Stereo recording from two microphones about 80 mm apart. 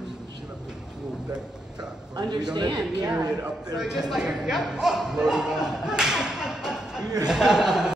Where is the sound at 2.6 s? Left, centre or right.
Right.